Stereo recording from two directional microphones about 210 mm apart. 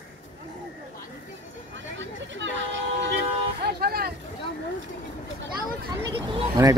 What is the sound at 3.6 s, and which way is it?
Vehicle, 45° right (ahead or behind).